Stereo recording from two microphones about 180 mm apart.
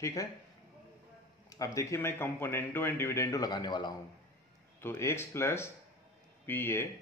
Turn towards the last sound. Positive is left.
turn(degrees=15)  # may be behind; listen again after turning